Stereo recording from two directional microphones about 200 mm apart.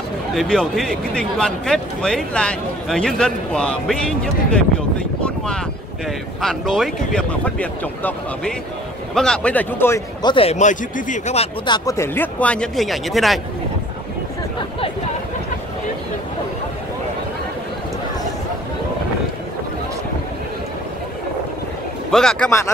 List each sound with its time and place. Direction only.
0.3 s a man's voice: centre (ahead or behind)
6.4 s a man's voice: centre (ahead or behind)
10.3 s speech: 30° left (ahead or behind)
11.6 s speech: 20° left (ahead or behind); by 13.4 s centre (ahead or behind)
22.1 s a man's voice: 5° left (ahead or behind)